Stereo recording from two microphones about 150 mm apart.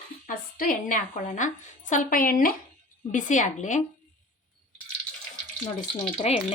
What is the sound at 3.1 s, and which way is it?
Speech, 55° left (ahead or behind).